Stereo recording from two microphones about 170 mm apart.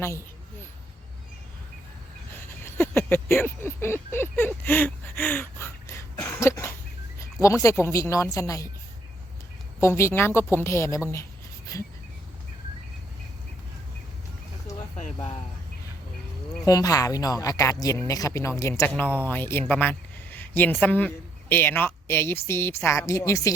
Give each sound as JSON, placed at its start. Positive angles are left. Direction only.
{"t": 2.6, "sound": "speech", "side_deg": 15}
{"t": 9.8, "sound": "speech", "side_deg": 15}
{"t": 14.9, "sound": "speech", "side_deg": 40}
{"t": 16.6, "sound": "speech", "side_deg": 20}